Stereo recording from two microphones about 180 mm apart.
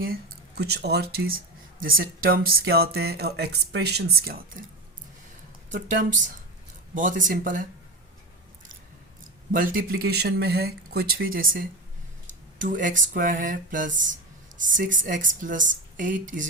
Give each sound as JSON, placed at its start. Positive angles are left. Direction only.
{"t": 0.0, "sound": "speech", "side_deg": -60}
{"t": 5.7, "sound": "speech", "side_deg": -45}
{"t": 9.5, "sound": "speech", "side_deg": -50}
{"t": 12.3, "sound": "a sound", "side_deg": -45}
{"t": 13.1, "sound": "speech", "side_deg": -45}